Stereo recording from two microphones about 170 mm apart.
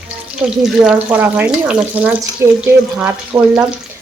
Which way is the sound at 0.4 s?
5° right (ahead or behind).